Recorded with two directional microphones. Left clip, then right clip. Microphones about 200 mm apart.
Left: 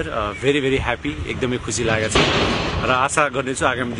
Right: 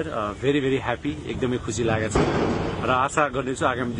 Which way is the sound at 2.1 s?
20° left (ahead or behind).